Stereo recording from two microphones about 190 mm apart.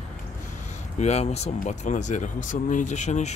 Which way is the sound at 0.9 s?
35° left (ahead or behind).